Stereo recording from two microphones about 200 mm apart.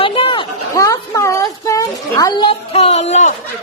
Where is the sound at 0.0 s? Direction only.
25° left (ahead or behind).